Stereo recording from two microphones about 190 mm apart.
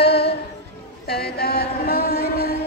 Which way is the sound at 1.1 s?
55° left (ahead or behind).